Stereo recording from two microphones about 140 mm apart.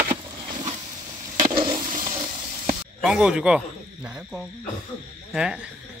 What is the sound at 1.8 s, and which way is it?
Toilet flush, 70° right (ahead or behind).